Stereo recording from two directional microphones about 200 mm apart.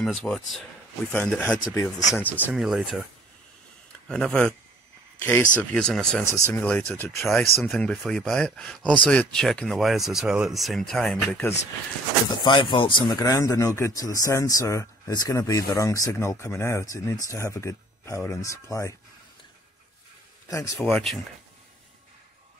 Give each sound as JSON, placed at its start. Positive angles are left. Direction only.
{"t": 0.0, "sound": "speech", "side_deg": 0}
{"t": 4.1, "sound": "speech", "side_deg": 5}
{"t": 12.3, "sound": "speech", "side_deg": 25}
{"t": 20.4, "sound": "speech", "side_deg": 15}
{"t": 20.8, "sound": "speech", "side_deg": 0}